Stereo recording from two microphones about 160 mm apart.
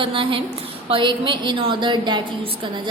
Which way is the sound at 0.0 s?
30° right (ahead or behind).